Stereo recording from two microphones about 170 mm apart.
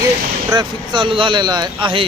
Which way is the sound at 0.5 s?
25° right (ahead or behind).